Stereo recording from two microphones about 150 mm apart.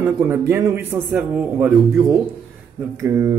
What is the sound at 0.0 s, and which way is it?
A man's voice, 15° right (ahead or behind).